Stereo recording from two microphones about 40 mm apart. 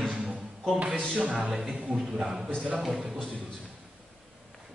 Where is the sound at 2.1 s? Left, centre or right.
Centre.